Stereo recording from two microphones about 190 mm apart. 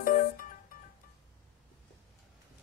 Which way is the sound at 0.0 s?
45° left (ahead or behind).